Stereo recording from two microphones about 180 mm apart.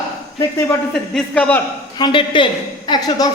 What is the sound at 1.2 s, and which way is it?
Speech, 5° left (ahead or behind).